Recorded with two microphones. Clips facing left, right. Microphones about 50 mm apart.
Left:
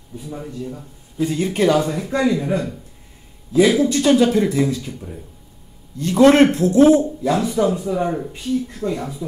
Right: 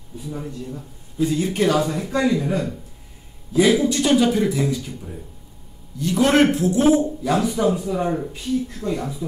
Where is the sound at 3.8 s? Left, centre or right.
Right.